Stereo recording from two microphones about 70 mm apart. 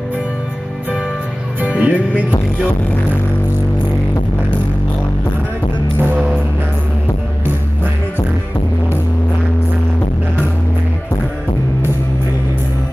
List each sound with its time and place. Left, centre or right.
1.6 s music: right